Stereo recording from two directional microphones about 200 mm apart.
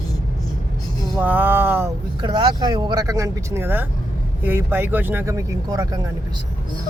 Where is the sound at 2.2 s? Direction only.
20° right (ahead or behind).